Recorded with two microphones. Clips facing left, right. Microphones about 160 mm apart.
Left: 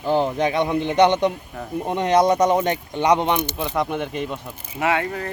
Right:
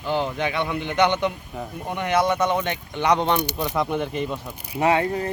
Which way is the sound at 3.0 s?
15° left (ahead or behind).